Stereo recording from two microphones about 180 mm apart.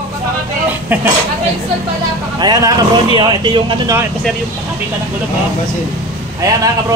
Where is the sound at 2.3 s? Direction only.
20° right (ahead or behind).